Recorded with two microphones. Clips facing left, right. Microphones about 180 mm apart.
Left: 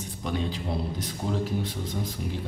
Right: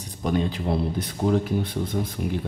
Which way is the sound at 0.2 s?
55° right (ahead or behind).